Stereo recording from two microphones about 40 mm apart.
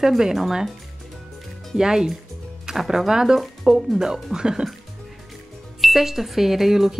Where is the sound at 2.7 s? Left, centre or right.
Centre.